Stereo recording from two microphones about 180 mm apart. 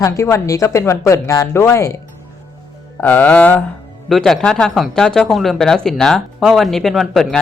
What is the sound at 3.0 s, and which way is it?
Speech, 10° left (ahead or behind).